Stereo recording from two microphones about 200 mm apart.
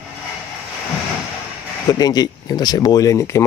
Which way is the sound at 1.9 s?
20° left (ahead or behind).